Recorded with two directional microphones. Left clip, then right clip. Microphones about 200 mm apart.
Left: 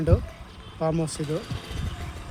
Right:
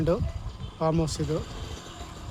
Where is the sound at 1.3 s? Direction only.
45° left (ahead or behind).